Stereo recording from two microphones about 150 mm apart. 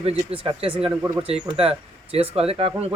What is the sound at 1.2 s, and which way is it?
Speech, 40° right (ahead or behind).